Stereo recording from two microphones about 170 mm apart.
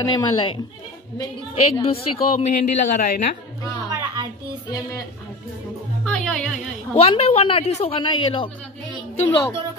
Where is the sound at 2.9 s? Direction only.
50° left (ahead or behind).